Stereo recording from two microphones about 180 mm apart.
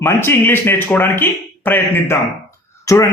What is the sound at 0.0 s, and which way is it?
A man's voice, 15° left (ahead or behind).